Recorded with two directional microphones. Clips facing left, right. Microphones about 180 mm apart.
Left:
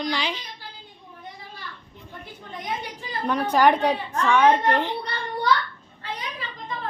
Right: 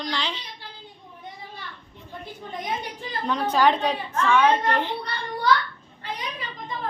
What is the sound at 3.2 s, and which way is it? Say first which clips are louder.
A woman's voice: left 2 dB; 10° left (ahead or behind).